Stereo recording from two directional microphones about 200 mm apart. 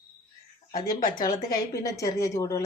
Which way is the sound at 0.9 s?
45° left (ahead or behind).